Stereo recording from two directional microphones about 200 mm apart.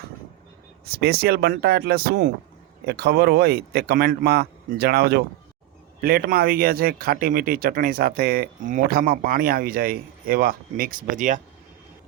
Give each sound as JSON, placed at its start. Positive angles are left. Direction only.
{"t": 0.9, "sound": "speech", "side_deg": -50}